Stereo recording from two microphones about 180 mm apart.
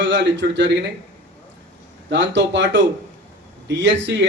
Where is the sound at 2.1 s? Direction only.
90° right.